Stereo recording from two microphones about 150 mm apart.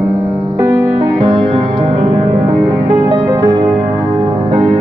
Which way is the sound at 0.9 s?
35° right (ahead or behind).